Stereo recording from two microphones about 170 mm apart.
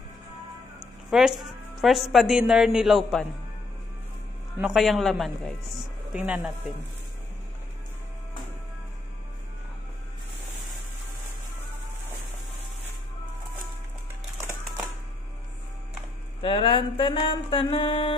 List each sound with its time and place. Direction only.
1.1 s a woman's voice: centre (ahead or behind)
4.6 s a woman's voice: centre (ahead or behind)
16.3 s mantra: 30° left (ahead or behind)